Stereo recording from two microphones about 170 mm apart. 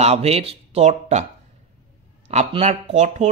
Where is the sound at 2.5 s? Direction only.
35° right (ahead or behind).